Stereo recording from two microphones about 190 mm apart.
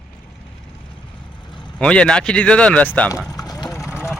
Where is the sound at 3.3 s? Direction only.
20° left (ahead or behind).